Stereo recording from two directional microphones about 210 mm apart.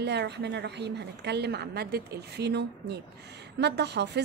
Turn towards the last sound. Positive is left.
turn(degrees=-55)  # may be behind; listen again after turning